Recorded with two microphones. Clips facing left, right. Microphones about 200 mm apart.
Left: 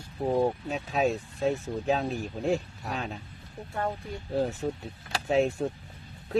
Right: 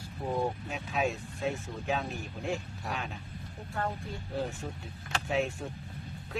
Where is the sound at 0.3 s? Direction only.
40° left (ahead or behind).